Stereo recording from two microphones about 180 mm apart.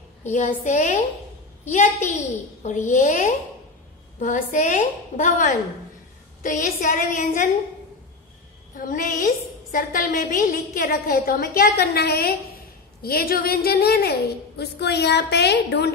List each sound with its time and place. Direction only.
0.3 s a woman's voice: 45° left (ahead or behind)
8.7 s a woman's voice: 50° left (ahead or behind); by 15.9 s 70° left (ahead or behind)